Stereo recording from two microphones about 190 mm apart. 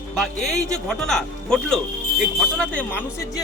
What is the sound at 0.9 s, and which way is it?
Speech, 5° left (ahead or behind).